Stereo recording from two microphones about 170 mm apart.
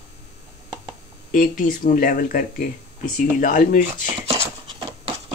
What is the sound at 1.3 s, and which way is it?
Speech, 50° left (ahead or behind).